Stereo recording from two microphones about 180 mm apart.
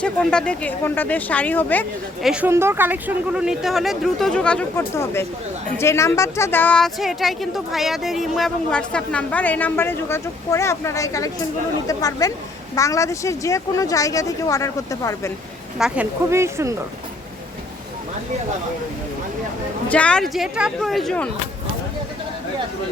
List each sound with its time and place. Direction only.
0.0 s speech: 5° left (ahead or behind)
2.2 s speech: 5° right (ahead or behind)
4.8 s speech: 15° left (ahead or behind)
15.8 s speech: 10° right (ahead or behind)
19.9 s speech: 5° left (ahead or behind)